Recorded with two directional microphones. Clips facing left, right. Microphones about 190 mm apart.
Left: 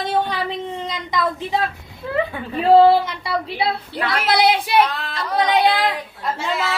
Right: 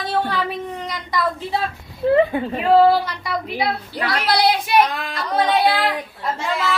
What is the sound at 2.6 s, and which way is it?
A woman's voice, 30° left (ahead or behind).